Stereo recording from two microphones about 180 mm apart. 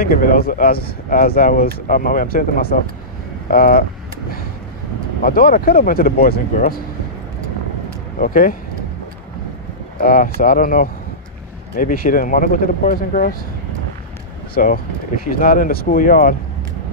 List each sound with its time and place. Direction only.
0.0 s speech: 55° left (ahead or behind)
5.2 s speech: 55° left (ahead or behind)
8.2 s speech: 50° left (ahead or behind)
9.9 s speech: 55° left (ahead or behind)
14.5 s speech: 50° left (ahead or behind)